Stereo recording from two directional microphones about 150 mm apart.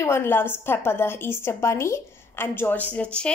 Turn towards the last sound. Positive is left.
turn(degrees=5)  # may be behind; listen again after turning